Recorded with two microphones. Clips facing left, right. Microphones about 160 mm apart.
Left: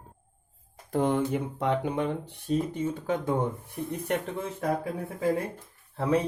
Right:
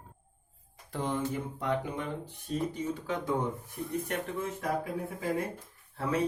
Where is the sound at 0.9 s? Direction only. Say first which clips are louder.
Left 7 dB; 60° left (ahead or behind).